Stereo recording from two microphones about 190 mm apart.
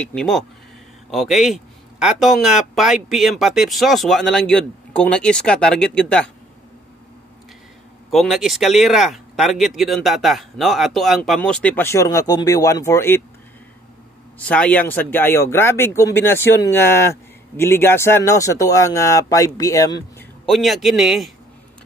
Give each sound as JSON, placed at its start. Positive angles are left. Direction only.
{"t": 0.0, "sound": "speech", "side_deg": 5}
{"t": 8.1, "sound": "speech", "side_deg": 0}
{"t": 14.4, "sound": "speech", "side_deg": 5}
{"t": 20.2, "sound": "a man's voice", "side_deg": 0}